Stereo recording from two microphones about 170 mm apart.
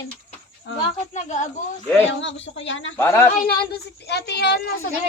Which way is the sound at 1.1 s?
45° left (ahead or behind).